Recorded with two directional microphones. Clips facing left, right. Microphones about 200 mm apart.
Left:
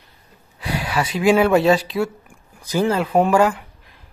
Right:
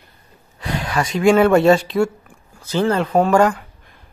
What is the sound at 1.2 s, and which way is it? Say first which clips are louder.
Speech: right 3 dB; 5° left (ahead or behind).